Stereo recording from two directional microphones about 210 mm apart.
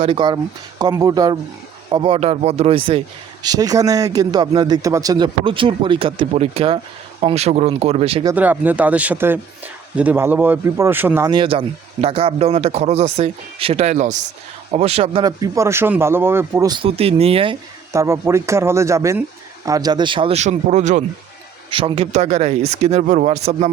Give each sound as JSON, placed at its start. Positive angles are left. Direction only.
{"t": 0.0, "sound": "a man's voice", "side_deg": -25}
{"t": 8.3, "sound": "a man's voice", "side_deg": -10}
{"t": 17.9, "sound": "a man's voice", "side_deg": -15}
{"t": 21.7, "sound": "speech", "side_deg": -25}